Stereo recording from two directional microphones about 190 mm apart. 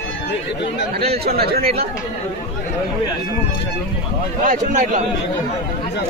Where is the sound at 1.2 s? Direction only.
55° right (ahead or behind).